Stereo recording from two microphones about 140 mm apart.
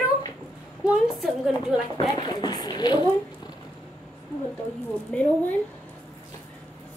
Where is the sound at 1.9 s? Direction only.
35° left (ahead or behind).